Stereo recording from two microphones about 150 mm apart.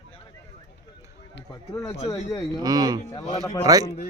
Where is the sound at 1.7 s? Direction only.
20° left (ahead or behind).